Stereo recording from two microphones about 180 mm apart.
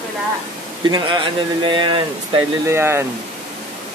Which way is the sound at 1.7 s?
25° right (ahead or behind).